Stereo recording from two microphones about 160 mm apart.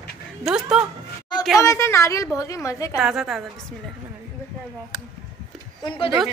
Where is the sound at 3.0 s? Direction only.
Centre (ahead or behind).